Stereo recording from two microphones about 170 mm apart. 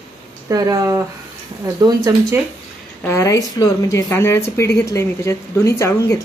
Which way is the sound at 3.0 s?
15° left (ahead or behind).